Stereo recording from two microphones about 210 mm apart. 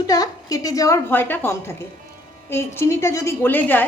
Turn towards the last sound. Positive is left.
turn(degrees=10)  # may be behind; listen again after turning